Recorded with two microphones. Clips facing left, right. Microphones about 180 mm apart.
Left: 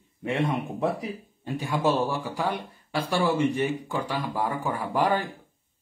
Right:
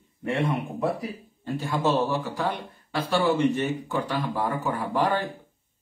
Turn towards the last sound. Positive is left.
turn(degrees=10)  # may be behind; listen again after turning